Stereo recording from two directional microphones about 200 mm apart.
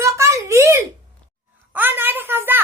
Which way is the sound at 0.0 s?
15° right (ahead or behind).